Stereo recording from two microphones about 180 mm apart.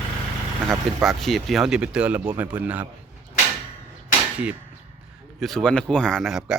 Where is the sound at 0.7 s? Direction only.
Centre (ahead or behind).